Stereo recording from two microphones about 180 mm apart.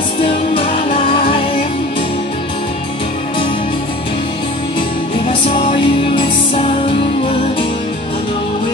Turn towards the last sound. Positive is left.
turn(degrees=30)  # may be behind; listen again after turning